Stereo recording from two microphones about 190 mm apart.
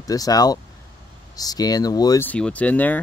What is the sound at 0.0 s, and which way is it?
Speech, 20° left (ahead or behind).